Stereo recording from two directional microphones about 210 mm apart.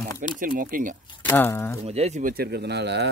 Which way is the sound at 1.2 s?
10° left (ahead or behind).